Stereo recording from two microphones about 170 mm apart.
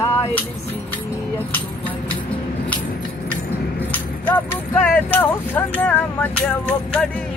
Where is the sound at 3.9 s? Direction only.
10° left (ahead or behind).